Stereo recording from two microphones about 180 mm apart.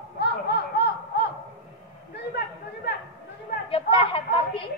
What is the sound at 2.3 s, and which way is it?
Chatter, 60° left (ahead or behind).